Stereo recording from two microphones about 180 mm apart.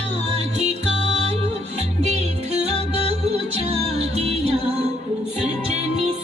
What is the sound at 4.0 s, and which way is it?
Music, 35° right (ahead or behind).